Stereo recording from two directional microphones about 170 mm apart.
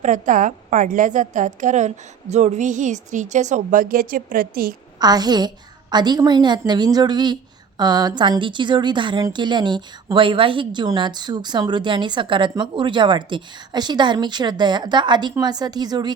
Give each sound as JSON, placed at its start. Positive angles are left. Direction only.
{"t": 0.0, "sound": "a woman's voice", "side_deg": -50}
{"t": 4.9, "sound": "a woman's voice", "side_deg": -25}